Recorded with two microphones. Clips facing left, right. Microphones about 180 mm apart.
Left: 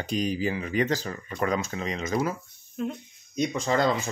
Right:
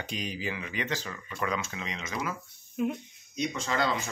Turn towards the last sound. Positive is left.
turn(degrees=40)  # may be behind; listen again after turning